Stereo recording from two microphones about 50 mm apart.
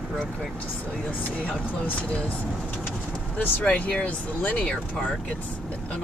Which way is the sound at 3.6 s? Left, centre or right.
Left.